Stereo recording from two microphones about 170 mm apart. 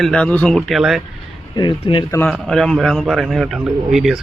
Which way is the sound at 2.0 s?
15° left (ahead or behind).